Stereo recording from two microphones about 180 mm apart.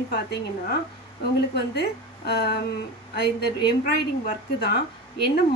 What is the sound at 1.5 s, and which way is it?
A woman's voice, 65° left (ahead or behind).